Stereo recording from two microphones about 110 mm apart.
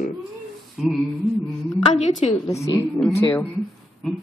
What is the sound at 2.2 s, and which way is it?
Speech, 70° left (ahead or behind).